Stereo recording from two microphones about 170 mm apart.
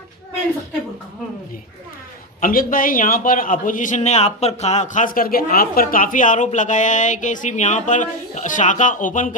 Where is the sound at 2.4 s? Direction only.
55° left (ahead or behind).